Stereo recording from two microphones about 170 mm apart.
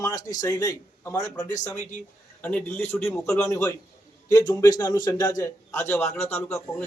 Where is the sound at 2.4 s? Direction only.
10° left (ahead or behind).